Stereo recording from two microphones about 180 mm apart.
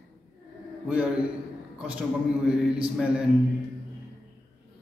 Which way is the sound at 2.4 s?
5° right (ahead or behind).